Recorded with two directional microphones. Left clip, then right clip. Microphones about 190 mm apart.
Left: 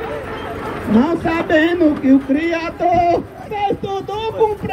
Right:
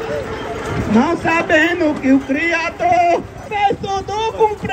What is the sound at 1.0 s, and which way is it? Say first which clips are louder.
Speech: right 3 dB; 25° right (ahead or behind).